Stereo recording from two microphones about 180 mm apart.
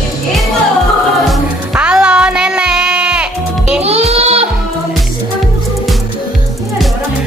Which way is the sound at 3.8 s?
35° right (ahead or behind).